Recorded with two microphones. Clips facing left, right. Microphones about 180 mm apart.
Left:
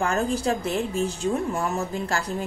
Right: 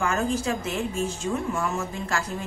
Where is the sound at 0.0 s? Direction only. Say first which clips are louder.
Left 1 dB; 35° left (ahead or behind).